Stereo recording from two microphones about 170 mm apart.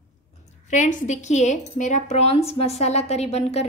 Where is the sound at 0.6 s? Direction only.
45° left (ahead or behind).